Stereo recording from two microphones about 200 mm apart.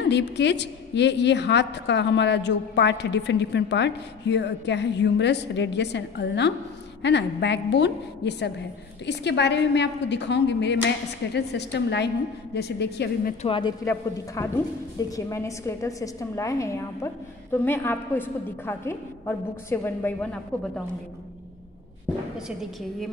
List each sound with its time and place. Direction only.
0.1 s a woman's voice: 60° left (ahead or behind)
13.4 s a woman's voice: 25° left (ahead or behind); by 20.8 s 5° left (ahead or behind)